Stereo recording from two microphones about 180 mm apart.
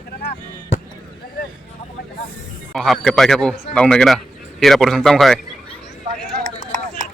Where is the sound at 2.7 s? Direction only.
Centre (ahead or behind).